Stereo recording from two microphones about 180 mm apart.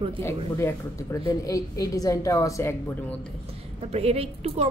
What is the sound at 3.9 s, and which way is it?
Speech, 35° right (ahead or behind).